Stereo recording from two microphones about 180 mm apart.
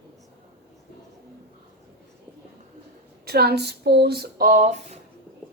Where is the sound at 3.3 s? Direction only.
60° right (ahead or behind); by 5.0 s 40° right (ahead or behind).